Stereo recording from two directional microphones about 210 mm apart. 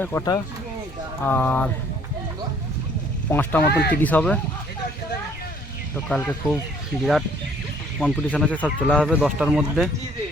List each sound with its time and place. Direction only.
0.0 s speech: 10° left (ahead or behind)
3.2 s speech: 10° left (ahead or behind)
3.6 s speech: 50° left (ahead or behind)
4.0 s speech: 5° left (ahead or behind)
6.1 s speech: 5° left (ahead or behind)